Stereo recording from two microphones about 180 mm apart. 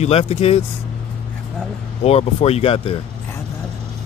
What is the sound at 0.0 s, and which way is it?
Speech, 35° left (ahead or behind).